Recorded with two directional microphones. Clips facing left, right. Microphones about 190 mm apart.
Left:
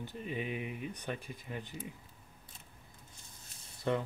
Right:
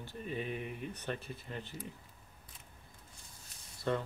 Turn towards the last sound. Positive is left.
turn(degrees=15)  # may be behind; listen again after turning